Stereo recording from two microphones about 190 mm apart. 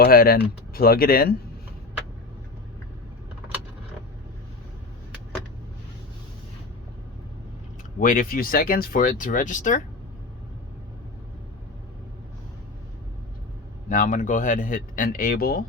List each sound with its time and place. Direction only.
0.0 s speech: 50° left (ahead or behind)
7.9 s speech: 45° left (ahead or behind)
13.9 s speech: 40° left (ahead or behind)